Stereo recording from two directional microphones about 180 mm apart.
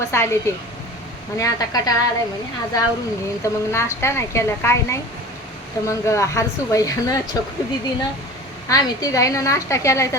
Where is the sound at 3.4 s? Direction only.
15° left (ahead or behind).